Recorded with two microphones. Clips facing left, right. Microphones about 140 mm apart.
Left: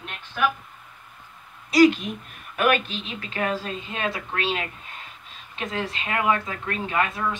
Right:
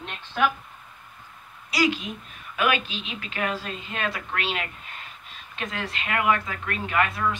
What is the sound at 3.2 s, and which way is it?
A woman's voice, 30° left (ahead or behind).